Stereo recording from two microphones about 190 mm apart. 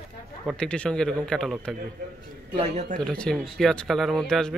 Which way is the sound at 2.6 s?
35° right (ahead or behind).